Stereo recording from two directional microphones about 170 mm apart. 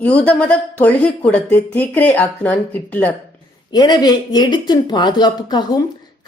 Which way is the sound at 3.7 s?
25° left (ahead or behind).